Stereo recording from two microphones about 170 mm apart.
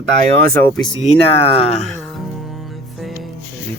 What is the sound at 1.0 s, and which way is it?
Speech, 35° left (ahead or behind).